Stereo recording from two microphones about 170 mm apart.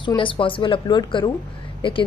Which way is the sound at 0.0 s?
30° left (ahead or behind).